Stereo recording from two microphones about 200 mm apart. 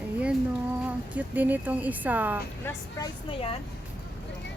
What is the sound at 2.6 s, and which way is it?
Speech, 15° left (ahead or behind).